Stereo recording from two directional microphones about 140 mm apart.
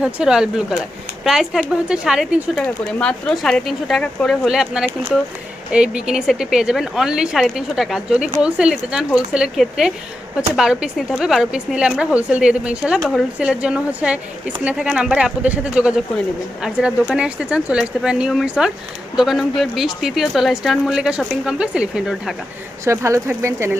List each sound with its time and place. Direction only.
0.0 s speech: 5° right (ahead or behind)
3.0 s a woman's voice: 5° left (ahead or behind)
22.8 s speech: 20° right (ahead or behind)